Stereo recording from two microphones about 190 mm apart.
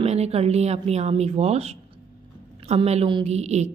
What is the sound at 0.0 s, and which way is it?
A woman's voice, 35° right (ahead or behind).